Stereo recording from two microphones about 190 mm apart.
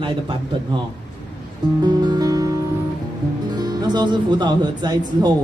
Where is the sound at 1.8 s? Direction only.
20° right (ahead or behind).